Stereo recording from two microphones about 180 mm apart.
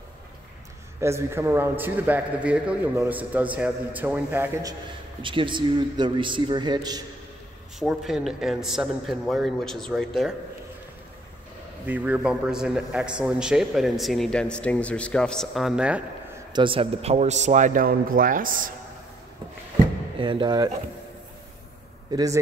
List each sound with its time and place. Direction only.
1.0 s a man's voice: 15° right (ahead or behind)
5.2 s a man's voice: 25° right (ahead or behind)
7.8 s a man's voice: centre (ahead or behind)
11.8 s a man's voice: 10° right (ahead or behind)
16.5 s a man's voice: 30° right (ahead or behind); by 18.7 s 50° right (ahead or behind)
20.2 s a man's voice: 30° right (ahead or behind)
22.1 s a man's voice: 20° right (ahead or behind)